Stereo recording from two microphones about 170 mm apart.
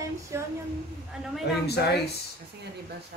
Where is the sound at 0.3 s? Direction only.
15° right (ahead or behind).